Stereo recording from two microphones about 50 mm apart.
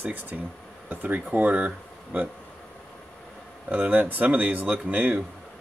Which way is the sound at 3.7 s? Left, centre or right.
Right.